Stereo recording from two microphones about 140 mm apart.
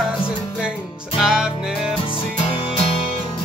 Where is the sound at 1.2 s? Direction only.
5° right (ahead or behind).